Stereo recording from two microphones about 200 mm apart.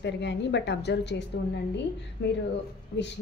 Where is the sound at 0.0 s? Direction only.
60° left (ahead or behind).